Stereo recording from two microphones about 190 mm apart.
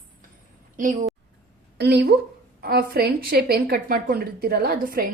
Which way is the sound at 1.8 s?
60° right (ahead or behind).